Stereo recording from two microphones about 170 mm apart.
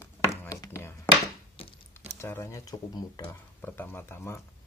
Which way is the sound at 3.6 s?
10° left (ahead or behind).